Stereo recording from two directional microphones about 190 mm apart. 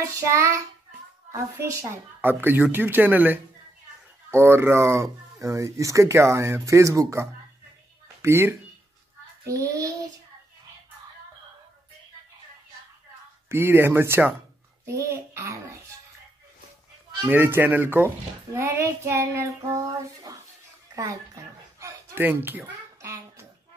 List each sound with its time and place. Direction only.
0.0 s speech: 15° right (ahead or behind)
13.5 s speech: 10° right (ahead or behind)
17.3 s speech: 10° right (ahead or behind)
20.9 s speech: 20° right (ahead or behind)
21.7 s a sound: 15° right (ahead or behind)